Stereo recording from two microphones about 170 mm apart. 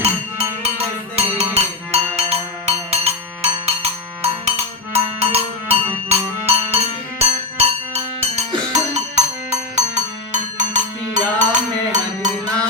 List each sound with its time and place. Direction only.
0.0 s music: 35° right (ahead or behind)